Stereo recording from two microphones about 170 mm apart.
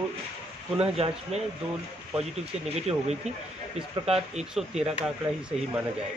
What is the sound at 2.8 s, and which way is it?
Speech, 40° right (ahead or behind).